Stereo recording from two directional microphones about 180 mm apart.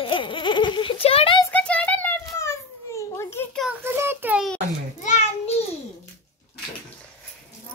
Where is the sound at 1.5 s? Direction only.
5° left (ahead or behind).